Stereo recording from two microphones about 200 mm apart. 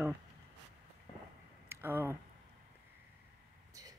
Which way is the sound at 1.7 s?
10° right (ahead or behind).